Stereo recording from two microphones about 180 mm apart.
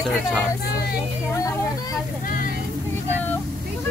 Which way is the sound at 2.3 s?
50° left (ahead or behind).